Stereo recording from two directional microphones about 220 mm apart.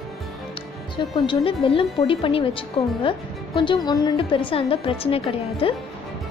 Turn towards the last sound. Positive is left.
turn(degrees=25)  # may be behind; listen again after turning